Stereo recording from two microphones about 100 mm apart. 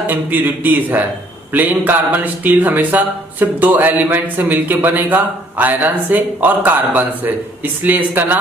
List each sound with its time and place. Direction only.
0.0 s speech: 20° right (ahead or behind)